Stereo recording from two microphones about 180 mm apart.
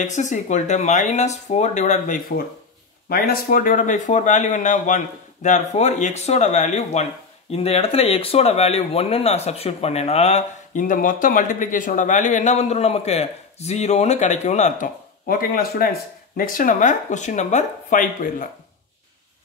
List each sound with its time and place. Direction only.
0.0 s speech: 45° left (ahead or behind)